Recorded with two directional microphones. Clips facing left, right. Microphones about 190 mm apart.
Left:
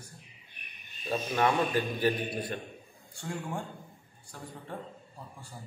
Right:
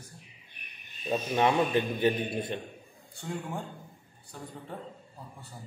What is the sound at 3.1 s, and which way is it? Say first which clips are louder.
A man's voice: even; centre (ahead or behind).